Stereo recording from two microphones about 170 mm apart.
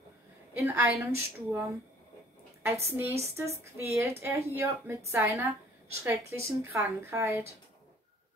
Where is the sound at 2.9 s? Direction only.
15° right (ahead or behind).